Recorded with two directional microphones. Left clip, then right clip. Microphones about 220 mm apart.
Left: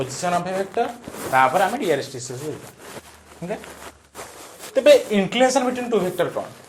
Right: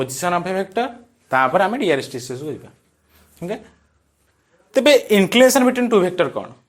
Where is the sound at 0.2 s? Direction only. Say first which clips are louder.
Right 2 dB; 40° right (ahead or behind).